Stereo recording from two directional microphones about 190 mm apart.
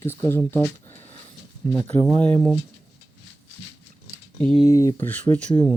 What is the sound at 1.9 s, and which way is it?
Speech, 25° right (ahead or behind).